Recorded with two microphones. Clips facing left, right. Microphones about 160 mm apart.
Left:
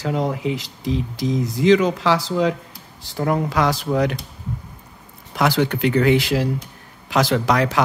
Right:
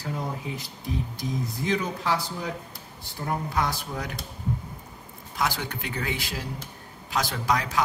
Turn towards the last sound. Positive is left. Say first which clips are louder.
# left 8 dB
turn(degrees=75)  # may be behind; listen again after turning